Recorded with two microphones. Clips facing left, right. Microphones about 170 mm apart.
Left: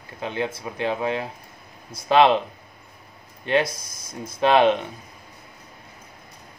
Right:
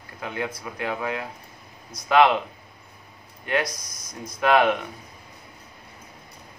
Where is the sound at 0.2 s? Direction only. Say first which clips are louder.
Left 3 dB; 25° left (ahead or behind).